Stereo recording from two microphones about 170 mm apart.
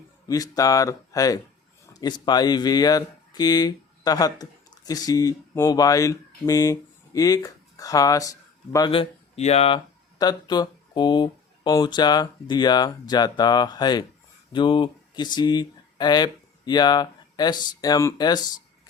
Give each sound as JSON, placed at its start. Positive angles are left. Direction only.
{"t": 0.3, "sound": "speech", "side_deg": 20}
{"t": 8.9, "sound": "speech", "side_deg": 35}